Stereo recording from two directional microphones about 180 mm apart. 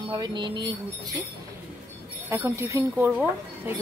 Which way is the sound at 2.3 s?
15° right (ahead or behind).